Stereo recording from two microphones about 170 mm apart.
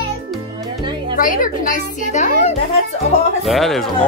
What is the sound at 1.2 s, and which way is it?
Speech, 50° left (ahead or behind).